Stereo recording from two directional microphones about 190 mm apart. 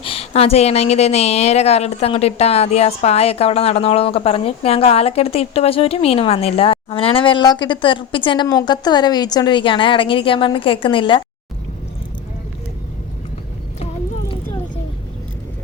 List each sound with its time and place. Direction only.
0.0 s a woman's voice: 30° left (ahead or behind)